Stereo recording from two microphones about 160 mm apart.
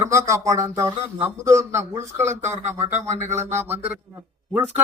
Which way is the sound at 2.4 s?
45° right (ahead or behind).